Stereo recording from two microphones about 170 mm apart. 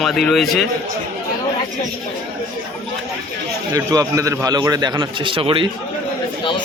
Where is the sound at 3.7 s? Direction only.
20° right (ahead or behind).